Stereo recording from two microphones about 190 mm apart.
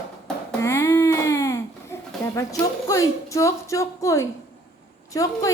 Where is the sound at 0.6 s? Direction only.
15° left (ahead or behind).